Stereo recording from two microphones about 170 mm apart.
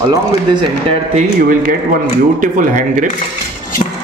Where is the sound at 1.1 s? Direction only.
50° right (ahead or behind).